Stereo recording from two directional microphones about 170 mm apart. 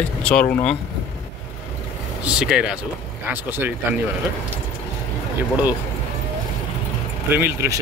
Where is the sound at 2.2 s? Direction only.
5° right (ahead or behind).